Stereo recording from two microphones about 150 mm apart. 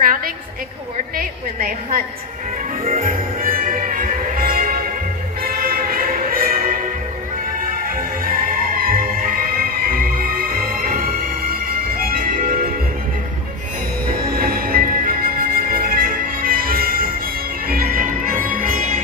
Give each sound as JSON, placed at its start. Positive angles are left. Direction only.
{"t": 0.0, "sound": "a sound", "side_deg": -70}
{"t": 1.1, "sound": "a woman's voice", "side_deg": -70}
{"t": 2.8, "sound": "music", "side_deg": -65}
{"t": 14.0, "sound": "music", "side_deg": -80}